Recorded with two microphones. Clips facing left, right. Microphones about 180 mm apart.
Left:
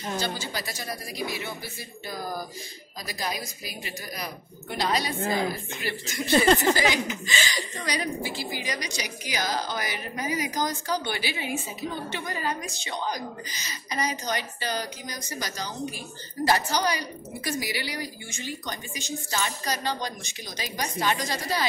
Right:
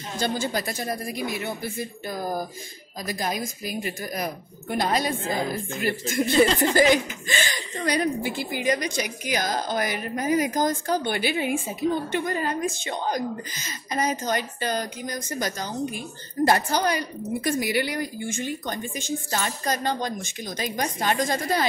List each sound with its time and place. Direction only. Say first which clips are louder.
0.2 s a woman's voice: right 6 dB; 50° right (ahead or behind)